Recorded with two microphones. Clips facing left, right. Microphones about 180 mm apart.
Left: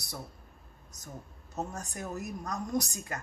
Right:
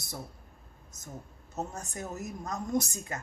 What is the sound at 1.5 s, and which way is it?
A woman's voice, 25° right (ahead or behind).